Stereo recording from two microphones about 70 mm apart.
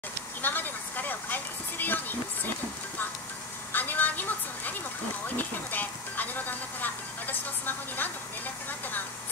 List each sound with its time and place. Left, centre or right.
0.4 s vehicle: left
3.7 s music: left
5.3 s speech: left
8.6 s a sound: left